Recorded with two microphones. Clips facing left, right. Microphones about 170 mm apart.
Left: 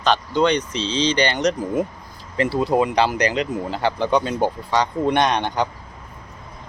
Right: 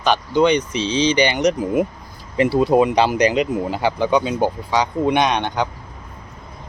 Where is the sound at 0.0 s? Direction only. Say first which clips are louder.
Right 2 dB; 10° right (ahead or behind).